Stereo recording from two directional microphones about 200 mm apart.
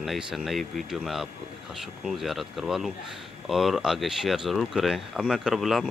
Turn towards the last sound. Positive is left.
turn(degrees=0)  # may be behind; listen again after turning